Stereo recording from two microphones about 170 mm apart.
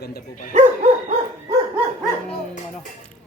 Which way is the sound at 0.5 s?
40° right (ahead or behind).